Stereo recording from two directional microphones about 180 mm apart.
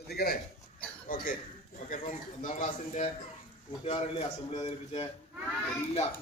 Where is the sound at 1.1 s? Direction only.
50° left (ahead or behind).